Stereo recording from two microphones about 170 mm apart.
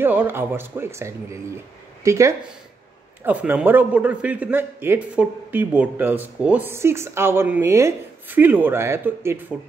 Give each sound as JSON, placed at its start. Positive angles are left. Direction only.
{"t": 0.0, "sound": "a man's voice", "side_deg": -10}